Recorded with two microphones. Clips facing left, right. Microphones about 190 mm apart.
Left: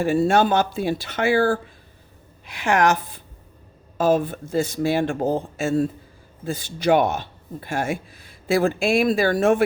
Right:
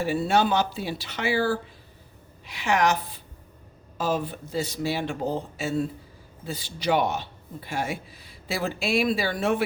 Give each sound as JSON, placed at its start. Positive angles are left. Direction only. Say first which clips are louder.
{"t": 0.0, "sound": "speech", "louder": "left 5 dB", "side_deg": 50}